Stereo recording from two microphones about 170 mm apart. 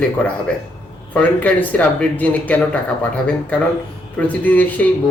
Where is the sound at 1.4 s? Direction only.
10° left (ahead or behind).